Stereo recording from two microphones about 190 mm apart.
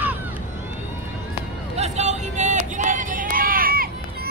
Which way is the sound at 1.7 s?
35° right (ahead or behind).